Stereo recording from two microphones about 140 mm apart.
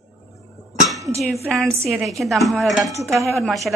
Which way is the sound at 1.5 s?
Centre (ahead or behind).